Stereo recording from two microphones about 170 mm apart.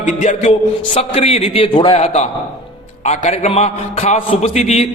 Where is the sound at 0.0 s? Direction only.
45° left (ahead or behind).